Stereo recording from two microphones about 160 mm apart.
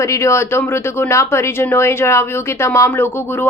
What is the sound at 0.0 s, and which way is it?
Speech, 20° left (ahead or behind).